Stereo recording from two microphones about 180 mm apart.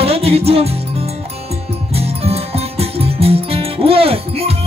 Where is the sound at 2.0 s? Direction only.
35° right (ahead or behind).